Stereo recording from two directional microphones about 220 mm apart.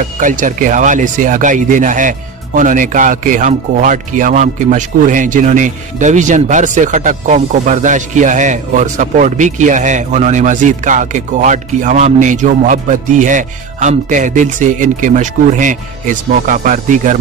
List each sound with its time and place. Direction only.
0.0 s speech: 35° right (ahead or behind)